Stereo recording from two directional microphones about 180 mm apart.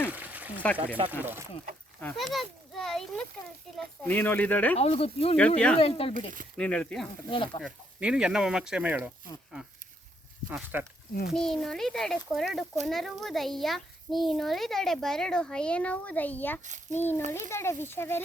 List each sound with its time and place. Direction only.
0.1 s a sound: 10° right (ahead or behind)
1.2 s speech: 10° right (ahead or behind)
2.0 s a child's voice: 5° left (ahead or behind)
4.8 s speech: 35° left (ahead or behind)
5.5 s a child's voice: 5° left (ahead or behind)
5.8 s speech: 30° left (ahead or behind)
6.6 s a child's voice: 5° left (ahead or behind)
7.3 s speech: 25° left (ahead or behind)
7.6 s a child's voice: 5° right (ahead or behind)
10.5 s speech: 10° right (ahead or behind)
11.3 s a child's voice: centre (ahead or behind)